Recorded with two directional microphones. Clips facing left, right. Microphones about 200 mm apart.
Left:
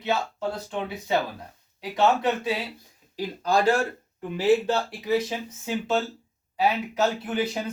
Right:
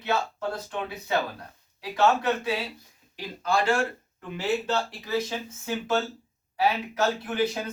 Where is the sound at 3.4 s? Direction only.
40° left (ahead or behind).